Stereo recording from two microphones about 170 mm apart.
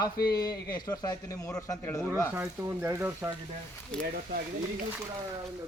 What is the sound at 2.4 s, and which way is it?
Speech, 10° right (ahead or behind).